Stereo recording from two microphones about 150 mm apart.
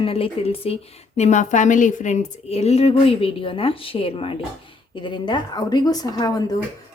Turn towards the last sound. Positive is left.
turn(degrees=25)  # may be behind; listen again after turning